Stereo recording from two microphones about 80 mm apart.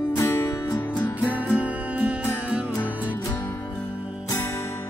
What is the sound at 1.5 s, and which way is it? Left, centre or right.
Music, centre.